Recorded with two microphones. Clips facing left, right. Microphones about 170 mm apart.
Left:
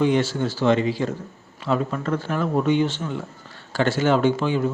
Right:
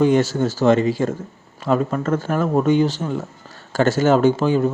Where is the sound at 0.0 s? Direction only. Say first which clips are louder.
Right 4 dB; 45° right (ahead or behind).